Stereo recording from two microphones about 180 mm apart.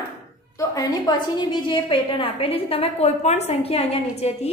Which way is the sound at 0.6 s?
20° left (ahead or behind).